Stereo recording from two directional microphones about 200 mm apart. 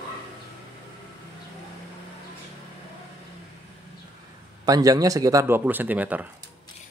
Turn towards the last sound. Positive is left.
turn(degrees=-10)  # may be behind; listen again after turning